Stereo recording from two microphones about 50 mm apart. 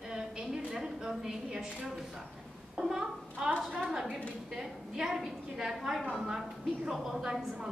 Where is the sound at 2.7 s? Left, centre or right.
Centre.